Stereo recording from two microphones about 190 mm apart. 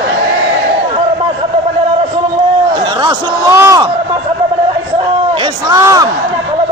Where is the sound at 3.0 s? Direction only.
15° right (ahead or behind).